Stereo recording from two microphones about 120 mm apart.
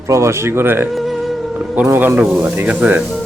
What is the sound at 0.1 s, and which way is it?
Speech, 25° right (ahead or behind).